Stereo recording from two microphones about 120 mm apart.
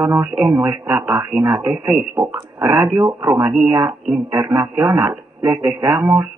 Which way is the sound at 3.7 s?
15° right (ahead or behind).